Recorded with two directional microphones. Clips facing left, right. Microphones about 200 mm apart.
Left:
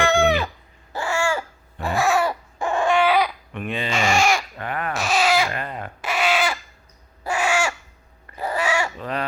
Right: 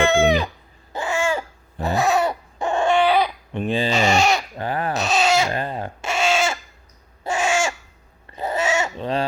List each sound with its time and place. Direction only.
0.0 s chicken: 15° right (ahead or behind)
0.9 s babbling: 20° right (ahead or behind)
3.2 s baby cry: 25° right (ahead or behind)
4.0 s a sound: 20° right (ahead or behind)
7.3 s owl: 25° right (ahead or behind)
8.3 s a sound: 25° right (ahead or behind)